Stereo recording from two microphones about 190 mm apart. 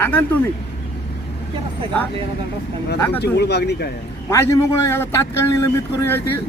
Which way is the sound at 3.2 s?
60° left (ahead or behind).